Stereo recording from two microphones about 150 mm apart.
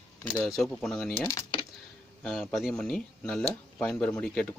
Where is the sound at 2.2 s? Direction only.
Centre (ahead or behind).